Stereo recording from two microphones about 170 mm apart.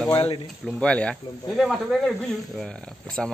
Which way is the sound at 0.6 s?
5° left (ahead or behind).